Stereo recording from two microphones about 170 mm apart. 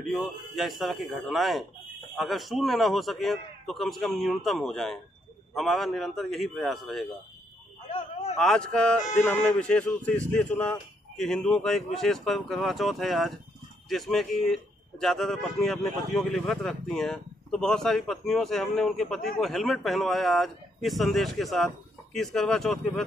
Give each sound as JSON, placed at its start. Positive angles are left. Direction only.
{"t": 0.0, "sound": "a man's voice", "side_deg": 0}
{"t": 7.9, "sound": "a sound", "side_deg": 40}
{"t": 8.4, "sound": "a man's voice", "side_deg": 5}